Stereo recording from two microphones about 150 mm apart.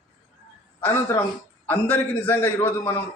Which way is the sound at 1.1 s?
15° left (ahead or behind).